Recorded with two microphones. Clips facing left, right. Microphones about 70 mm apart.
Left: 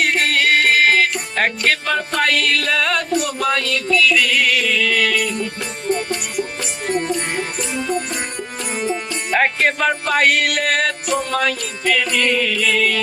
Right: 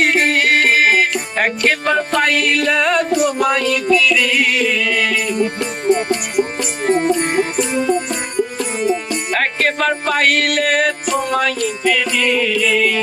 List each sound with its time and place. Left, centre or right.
0.0 s music: right
6.8 s music: right
9.3 s music: centre